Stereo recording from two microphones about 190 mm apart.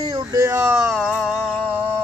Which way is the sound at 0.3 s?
15° right (ahead or behind).